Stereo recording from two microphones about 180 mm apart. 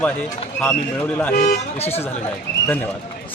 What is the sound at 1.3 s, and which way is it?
Speech, 50° left (ahead or behind).